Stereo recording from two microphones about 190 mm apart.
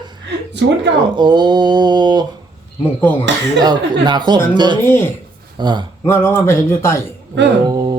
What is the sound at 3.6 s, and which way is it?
Speech, 20° right (ahead or behind).